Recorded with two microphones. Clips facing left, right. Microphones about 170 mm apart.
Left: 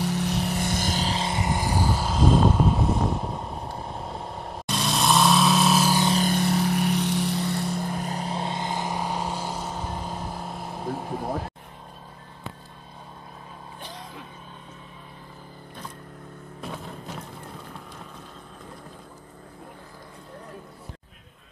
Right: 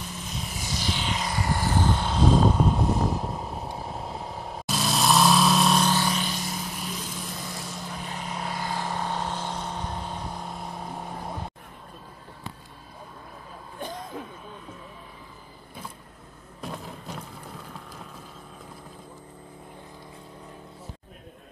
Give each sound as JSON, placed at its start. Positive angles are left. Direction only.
{"t": 0.0, "sound": "vehicle", "side_deg": 75}
{"t": 6.3, "sound": "vehicle", "side_deg": 65}
{"t": 8.1, "sound": "vehicle", "side_deg": 35}
{"t": 13.7, "sound": "vehicle", "side_deg": -45}
{"t": 16.6, "sound": "music", "side_deg": 0}